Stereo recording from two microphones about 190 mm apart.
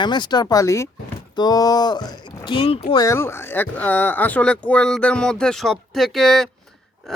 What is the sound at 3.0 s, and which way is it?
Speech, 15° left (ahead or behind).